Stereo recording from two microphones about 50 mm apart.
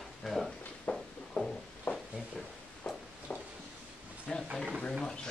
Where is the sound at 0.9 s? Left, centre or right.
Left.